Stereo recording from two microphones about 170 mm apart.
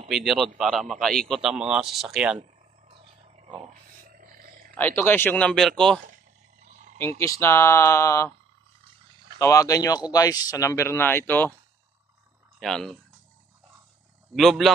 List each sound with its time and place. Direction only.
0.1 s a man's voice: centre (ahead or behind)
2.9 s wild animals: 35° right (ahead or behind)
4.1 s a sound: 55° right (ahead or behind)
4.7 s speech: 10° left (ahead or behind)
6.7 s a sound: 45° right (ahead or behind)
7.0 s speech: 15° left (ahead or behind)
9.4 s speech: 20° left (ahead or behind)
12.5 s speech: centre (ahead or behind)
14.3 s a man's voice: centre (ahead or behind)